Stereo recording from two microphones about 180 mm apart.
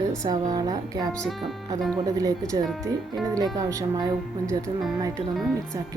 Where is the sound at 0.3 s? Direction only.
20° right (ahead or behind).